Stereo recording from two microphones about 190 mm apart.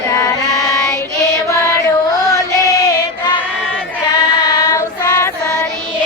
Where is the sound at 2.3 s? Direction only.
15° left (ahead or behind).